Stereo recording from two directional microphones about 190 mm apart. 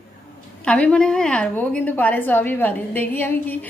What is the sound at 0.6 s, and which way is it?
A woman's voice, 5° left (ahead or behind).